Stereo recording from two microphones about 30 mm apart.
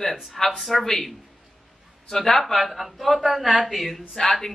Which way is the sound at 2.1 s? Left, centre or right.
Centre.